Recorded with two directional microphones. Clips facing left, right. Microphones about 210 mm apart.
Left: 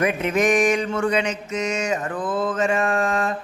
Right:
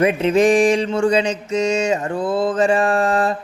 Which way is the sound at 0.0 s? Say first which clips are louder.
Right 6 dB; 25° right (ahead or behind).